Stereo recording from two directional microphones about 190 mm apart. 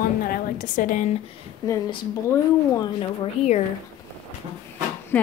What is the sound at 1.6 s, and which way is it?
Speech, 20° left (ahead or behind).